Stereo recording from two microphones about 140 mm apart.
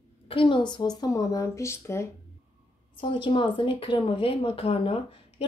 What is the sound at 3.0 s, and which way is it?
Speech, 40° left (ahead or behind).